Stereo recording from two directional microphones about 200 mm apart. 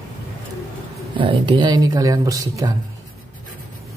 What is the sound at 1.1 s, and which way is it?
Speech, 25° right (ahead or behind).